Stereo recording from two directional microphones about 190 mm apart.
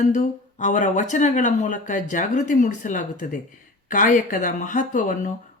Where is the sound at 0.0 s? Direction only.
40° left (ahead or behind).